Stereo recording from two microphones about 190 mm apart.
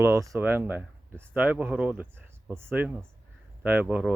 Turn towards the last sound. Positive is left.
turn(degrees=-10)  # may be behind; listen again after turning